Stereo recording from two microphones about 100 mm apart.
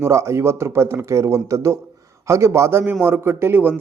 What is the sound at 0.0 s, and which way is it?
A man's voice, 30° right (ahead or behind).